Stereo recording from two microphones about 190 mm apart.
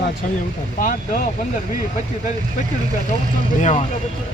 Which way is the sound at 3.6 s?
35° left (ahead or behind).